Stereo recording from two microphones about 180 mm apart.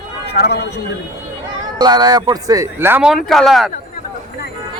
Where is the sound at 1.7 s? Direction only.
25° right (ahead or behind).